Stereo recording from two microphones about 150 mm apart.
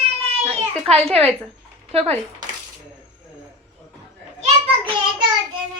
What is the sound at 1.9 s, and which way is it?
Speech, 45° right (ahead or behind).